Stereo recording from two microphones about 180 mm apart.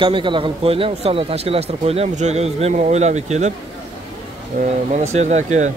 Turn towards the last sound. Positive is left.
turn(degrees=-40)  # may be behind; listen again after turning